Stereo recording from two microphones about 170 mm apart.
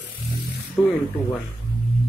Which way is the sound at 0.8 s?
Centre (ahead or behind).